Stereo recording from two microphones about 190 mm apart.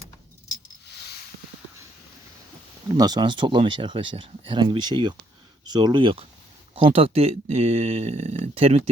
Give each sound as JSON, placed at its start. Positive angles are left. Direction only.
{"t": 3.0, "sound": "speech", "side_deg": -20}